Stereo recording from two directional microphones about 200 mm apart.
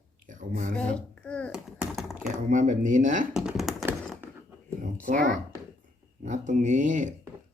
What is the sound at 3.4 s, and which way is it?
Computer keyboard, centre (ahead or behind).